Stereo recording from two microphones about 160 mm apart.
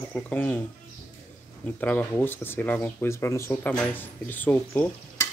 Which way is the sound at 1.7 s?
10° left (ahead or behind).